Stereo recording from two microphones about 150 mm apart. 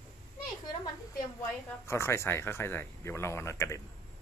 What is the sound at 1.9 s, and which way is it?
Speech, 20° left (ahead or behind).